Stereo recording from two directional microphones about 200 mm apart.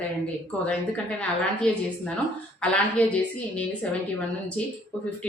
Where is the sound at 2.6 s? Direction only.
5° left (ahead or behind).